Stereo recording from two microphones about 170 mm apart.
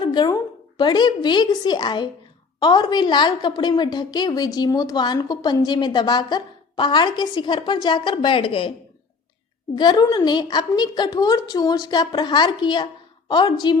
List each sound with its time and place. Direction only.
0.0 s a woman's voice: 25° left (ahead or behind)
9.7 s a woman's voice: 25° left (ahead or behind)